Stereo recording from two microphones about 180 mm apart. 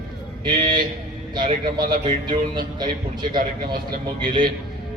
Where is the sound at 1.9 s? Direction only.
25° right (ahead or behind).